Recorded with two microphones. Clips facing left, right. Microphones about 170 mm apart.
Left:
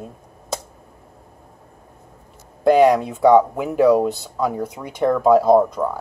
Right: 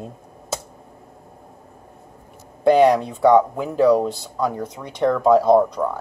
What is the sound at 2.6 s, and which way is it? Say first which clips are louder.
Speech: left 1 dB; centre (ahead or behind).